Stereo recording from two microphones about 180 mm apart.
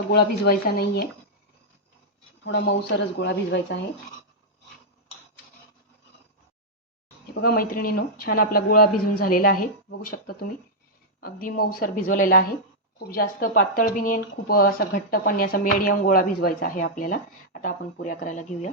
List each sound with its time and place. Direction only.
0.1 s speech: 60° left (ahead or behind)
2.4 s speech: 75° left (ahead or behind)
7.4 s speech: 55° left (ahead or behind)
11.2 s speech: 55° left (ahead or behind)